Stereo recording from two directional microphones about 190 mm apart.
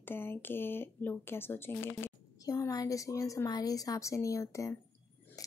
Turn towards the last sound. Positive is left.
turn(degrees=20)  # may be behind; listen again after turning